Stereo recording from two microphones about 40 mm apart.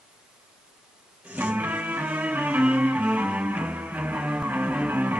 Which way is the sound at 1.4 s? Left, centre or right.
Right.